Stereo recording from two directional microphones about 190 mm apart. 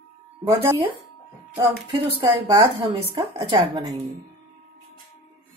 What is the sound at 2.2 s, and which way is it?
Speech, 20° right (ahead or behind).